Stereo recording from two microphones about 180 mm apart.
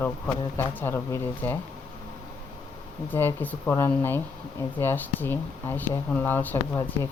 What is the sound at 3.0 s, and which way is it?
Speech, 10° left (ahead or behind).